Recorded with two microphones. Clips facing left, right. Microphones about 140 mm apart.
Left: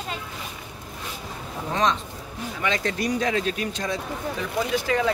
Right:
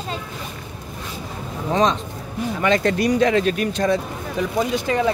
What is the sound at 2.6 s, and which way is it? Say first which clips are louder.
Speech: right 7 dB; 55° right (ahead or behind).